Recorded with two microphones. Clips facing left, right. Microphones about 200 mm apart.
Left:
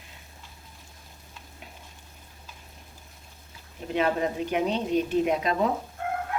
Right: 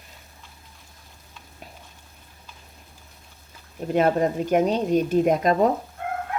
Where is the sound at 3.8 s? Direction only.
45° right (ahead or behind).